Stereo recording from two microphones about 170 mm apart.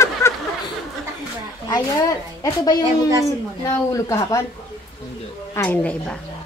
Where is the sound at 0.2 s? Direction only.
15° left (ahead or behind).